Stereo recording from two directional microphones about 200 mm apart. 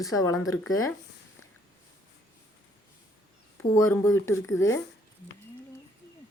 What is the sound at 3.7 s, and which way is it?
Speech, 15° left (ahead or behind).